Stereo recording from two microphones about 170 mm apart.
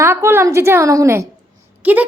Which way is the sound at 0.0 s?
15° right (ahead or behind).